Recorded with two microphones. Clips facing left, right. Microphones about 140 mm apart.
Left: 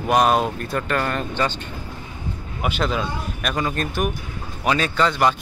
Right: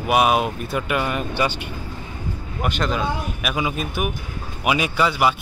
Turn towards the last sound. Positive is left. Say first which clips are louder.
# even
turn(degrees=-5)  # may be behind; listen again after turning